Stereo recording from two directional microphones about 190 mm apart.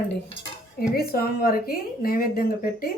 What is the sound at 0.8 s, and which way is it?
Speech, 50° left (ahead or behind).